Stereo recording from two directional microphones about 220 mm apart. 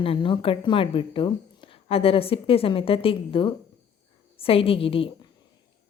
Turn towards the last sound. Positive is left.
turn(degrees=25)  # may be behind; listen again after turning